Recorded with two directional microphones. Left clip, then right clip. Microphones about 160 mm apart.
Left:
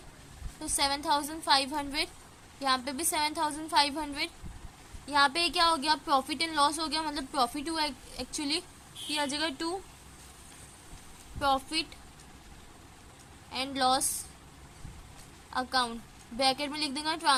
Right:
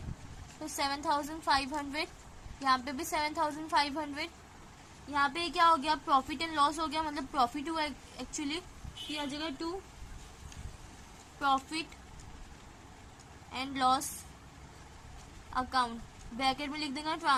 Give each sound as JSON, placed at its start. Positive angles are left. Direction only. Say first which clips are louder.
{"t": 0.6, "sound": "a woman's voice", "louder": "left 4 dB", "side_deg": 15}
{"t": 5.1, "sound": "a woman's voice", "louder": "left 5 dB", "side_deg": 30}
{"t": 9.1, "sound": "a woman's voice", "louder": "left 7 dB", "side_deg": 35}
{"t": 11.3, "sound": "a woman's voice", "louder": "left 2 dB", "side_deg": 20}
{"t": 13.5, "sound": "a woman's voice", "louder": "left 2 dB", "side_deg": 20}
{"t": 15.5, "sound": "a woman's voice", "louder": "left 2 dB", "side_deg": 20}